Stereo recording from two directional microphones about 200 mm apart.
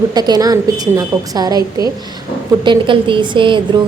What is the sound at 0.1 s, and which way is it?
A woman's voice, 20° right (ahead or behind).